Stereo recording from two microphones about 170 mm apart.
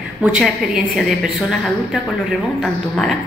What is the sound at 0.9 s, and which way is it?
Speech, centre (ahead or behind).